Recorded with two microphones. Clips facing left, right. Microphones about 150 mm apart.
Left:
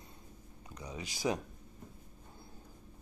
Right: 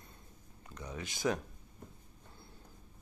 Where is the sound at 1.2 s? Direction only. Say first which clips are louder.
Even; 15° left (ahead or behind).